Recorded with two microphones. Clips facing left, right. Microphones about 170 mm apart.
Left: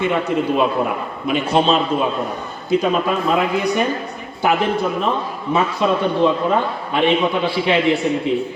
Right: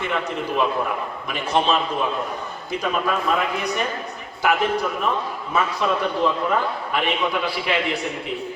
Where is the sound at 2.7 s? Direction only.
30° left (ahead or behind).